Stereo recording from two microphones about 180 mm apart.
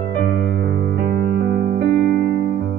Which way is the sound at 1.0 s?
55° right (ahead or behind).